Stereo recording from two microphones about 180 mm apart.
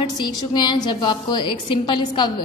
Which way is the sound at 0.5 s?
25° left (ahead or behind).